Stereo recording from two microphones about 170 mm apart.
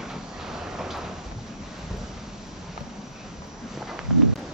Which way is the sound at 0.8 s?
Centre (ahead or behind).